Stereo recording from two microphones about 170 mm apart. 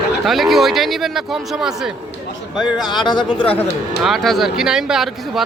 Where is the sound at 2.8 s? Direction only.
25° left (ahead or behind).